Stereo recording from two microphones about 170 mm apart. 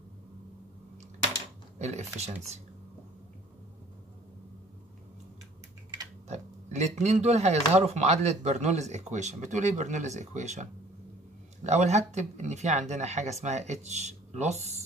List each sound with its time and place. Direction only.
1.8 s speech: 40° right (ahead or behind)
6.2 s speech: 40° right (ahead or behind)